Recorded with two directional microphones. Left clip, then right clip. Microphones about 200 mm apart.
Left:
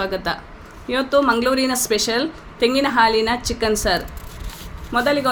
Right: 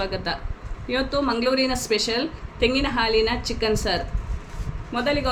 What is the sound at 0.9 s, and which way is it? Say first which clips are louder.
A woman's voice: left 7 dB; 15° left (ahead or behind).